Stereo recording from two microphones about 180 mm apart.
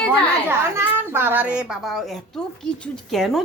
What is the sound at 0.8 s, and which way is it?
A child's voice, 10° right (ahead or behind).